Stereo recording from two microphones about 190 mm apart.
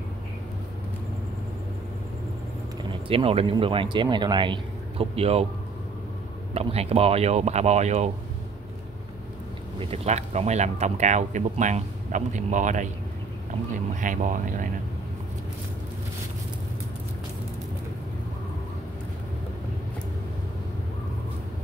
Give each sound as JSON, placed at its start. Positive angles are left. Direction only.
{"t": 2.8, "sound": "speech", "side_deg": -30}
{"t": 6.5, "sound": "speech", "side_deg": -30}
{"t": 9.8, "sound": "speech", "side_deg": -35}
{"t": 14.0, "sound": "speech", "side_deg": -45}